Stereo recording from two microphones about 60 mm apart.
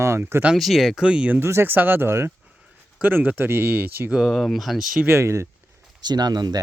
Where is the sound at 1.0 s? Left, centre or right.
Centre.